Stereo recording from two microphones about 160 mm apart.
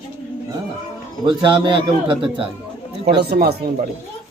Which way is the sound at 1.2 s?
30° right (ahead or behind).